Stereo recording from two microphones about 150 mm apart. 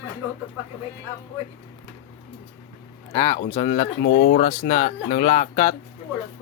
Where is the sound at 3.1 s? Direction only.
40° left (ahead or behind).